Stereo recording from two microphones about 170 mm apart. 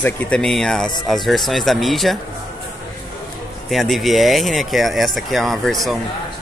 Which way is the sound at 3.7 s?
Centre (ahead or behind).